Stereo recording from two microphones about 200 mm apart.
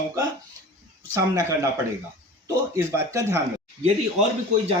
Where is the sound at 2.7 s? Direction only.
10° right (ahead or behind).